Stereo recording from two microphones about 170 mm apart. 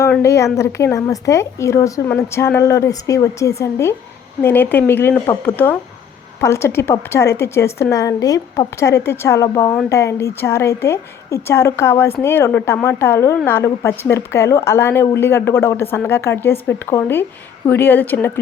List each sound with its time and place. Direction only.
0.0 s a woman's voice: 15° left (ahead or behind)